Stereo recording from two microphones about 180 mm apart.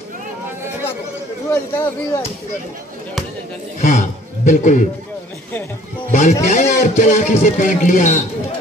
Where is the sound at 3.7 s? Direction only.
45° left (ahead or behind).